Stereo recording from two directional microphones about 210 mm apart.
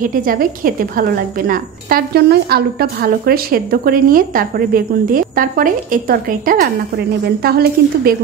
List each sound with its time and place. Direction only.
0.0 s a woman's voice: 40° right (ahead or behind)